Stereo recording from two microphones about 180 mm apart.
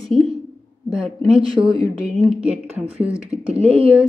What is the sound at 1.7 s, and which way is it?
Speech, 30° right (ahead or behind).